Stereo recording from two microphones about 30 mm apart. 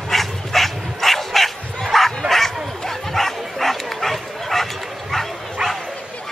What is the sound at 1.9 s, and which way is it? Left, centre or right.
Bow-wow, centre.